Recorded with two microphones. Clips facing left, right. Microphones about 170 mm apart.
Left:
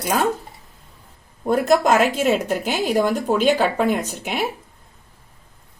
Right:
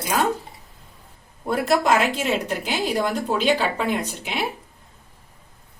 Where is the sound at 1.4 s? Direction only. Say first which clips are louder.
Left 3 dB; 45° left (ahead or behind).